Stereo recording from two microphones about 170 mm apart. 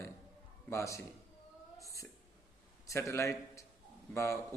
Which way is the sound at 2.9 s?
15° left (ahead or behind).